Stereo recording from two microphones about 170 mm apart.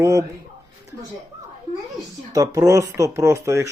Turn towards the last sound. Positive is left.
turn(degrees=-15)  # may be behind; listen again after turning